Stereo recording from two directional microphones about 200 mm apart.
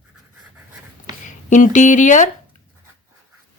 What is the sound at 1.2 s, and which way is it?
Speech, 40° left (ahead or behind).